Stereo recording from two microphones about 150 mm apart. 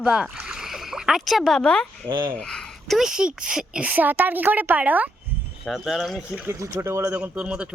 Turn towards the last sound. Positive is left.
turn(degrees=-5)  # may be behind; listen again after turning